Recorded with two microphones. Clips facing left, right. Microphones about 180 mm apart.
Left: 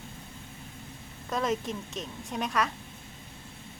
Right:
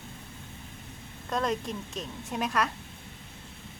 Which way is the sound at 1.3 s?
Centre (ahead or behind).